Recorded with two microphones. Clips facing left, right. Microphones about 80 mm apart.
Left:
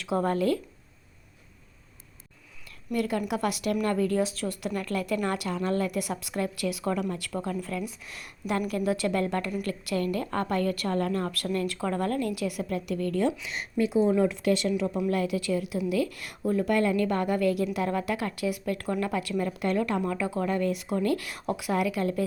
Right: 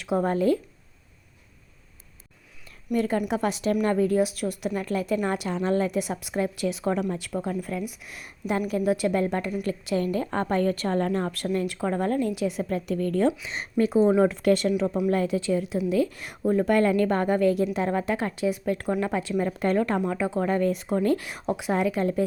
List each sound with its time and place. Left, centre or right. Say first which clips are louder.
0.0 s speech: right 2 dB; centre
2.9 s a woman's voice: right 3 dB; right
16.5 s speech: right 4 dB; right
19.5 s speech: right 5 dB; right